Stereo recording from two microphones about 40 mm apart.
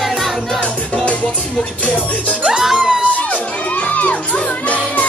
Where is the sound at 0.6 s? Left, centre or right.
Left.